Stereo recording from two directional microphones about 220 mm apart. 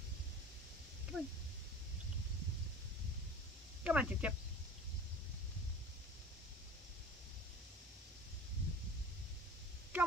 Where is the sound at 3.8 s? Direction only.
5° right (ahead or behind).